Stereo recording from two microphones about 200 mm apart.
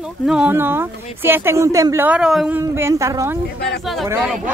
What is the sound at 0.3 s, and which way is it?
Speech, 10° right (ahead or behind).